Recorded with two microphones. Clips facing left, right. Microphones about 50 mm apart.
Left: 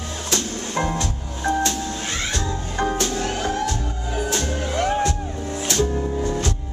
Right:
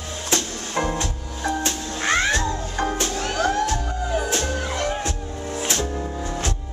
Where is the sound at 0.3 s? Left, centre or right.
Right.